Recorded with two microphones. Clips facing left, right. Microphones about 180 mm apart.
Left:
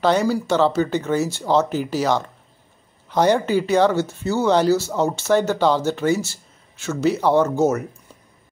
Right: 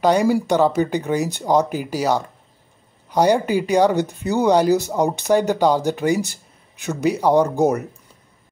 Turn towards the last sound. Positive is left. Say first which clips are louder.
# right 1 dB
turn(degrees=-15)  # may be behind; listen again after turning